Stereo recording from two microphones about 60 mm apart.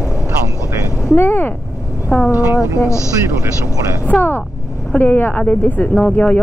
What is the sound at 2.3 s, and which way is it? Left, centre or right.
Speech, right.